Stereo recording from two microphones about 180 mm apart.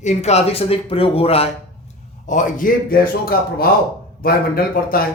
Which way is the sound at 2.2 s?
45° left (ahead or behind).